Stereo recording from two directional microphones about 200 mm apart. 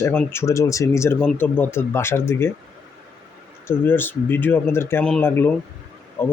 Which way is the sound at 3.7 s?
10° left (ahead or behind).